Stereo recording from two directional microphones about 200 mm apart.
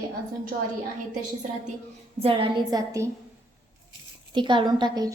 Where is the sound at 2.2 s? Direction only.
25° right (ahead or behind).